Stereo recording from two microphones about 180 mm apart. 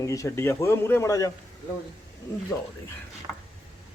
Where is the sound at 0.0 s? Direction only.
15° left (ahead or behind).